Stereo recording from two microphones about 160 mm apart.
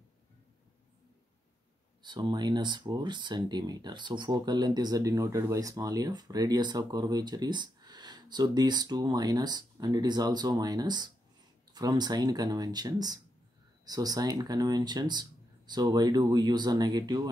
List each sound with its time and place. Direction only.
2.0 s speech: 30° right (ahead or behind)